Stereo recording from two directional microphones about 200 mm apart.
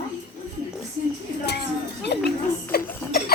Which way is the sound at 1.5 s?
55° left (ahead or behind).